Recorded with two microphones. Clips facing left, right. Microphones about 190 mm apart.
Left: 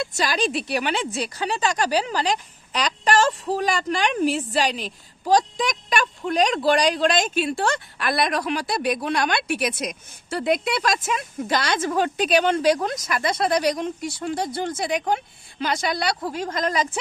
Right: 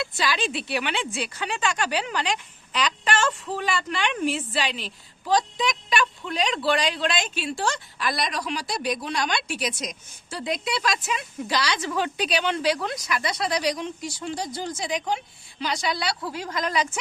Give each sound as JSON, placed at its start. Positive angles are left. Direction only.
{"t": 0.0, "sound": "speech", "side_deg": 45}